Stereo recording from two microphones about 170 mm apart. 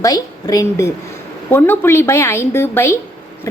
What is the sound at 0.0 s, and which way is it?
A woman's voice, 20° left (ahead or behind).